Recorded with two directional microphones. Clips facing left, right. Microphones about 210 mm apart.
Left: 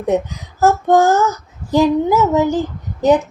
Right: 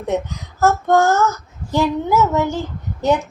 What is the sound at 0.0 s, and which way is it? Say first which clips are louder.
Speech: left 4 dB; 15° left (ahead or behind).